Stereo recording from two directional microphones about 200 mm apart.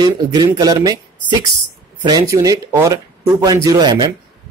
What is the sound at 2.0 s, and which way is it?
Speech, 20° right (ahead or behind).